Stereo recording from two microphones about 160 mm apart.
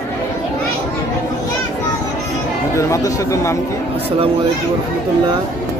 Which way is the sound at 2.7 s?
20° left (ahead or behind).